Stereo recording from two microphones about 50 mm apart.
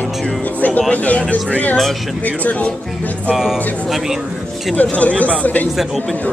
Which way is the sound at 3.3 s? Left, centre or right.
Centre.